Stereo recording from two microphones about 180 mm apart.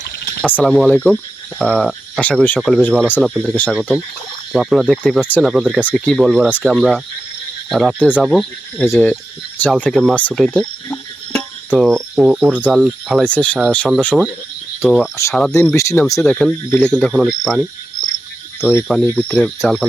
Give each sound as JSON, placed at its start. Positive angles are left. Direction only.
{"t": 0.4, "sound": "speech", "side_deg": 5}
{"t": 3.5, "sound": "speech", "side_deg": 10}
{"t": 3.8, "sound": "speech", "side_deg": 0}
{"t": 9.8, "sound": "speech", "side_deg": 0}
{"t": 15.1, "sound": "speech", "side_deg": 15}
{"t": 16.2, "sound": "speech", "side_deg": 0}